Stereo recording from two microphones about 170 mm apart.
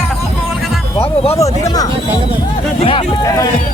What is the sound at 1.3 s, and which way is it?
Speech, 20° left (ahead or behind).